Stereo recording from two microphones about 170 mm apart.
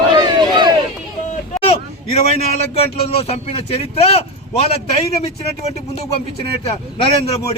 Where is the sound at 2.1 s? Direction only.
40° left (ahead or behind).